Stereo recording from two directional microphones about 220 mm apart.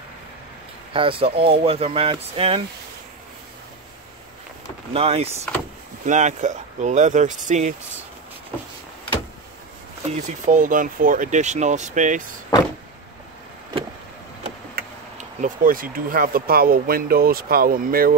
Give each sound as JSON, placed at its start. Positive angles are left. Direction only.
{"t": 0.9, "sound": "speech", "side_deg": -25}
{"t": 4.9, "sound": "speech", "side_deg": -25}
{"t": 10.0, "sound": "speech", "side_deg": -30}
{"t": 15.4, "sound": "speech", "side_deg": -40}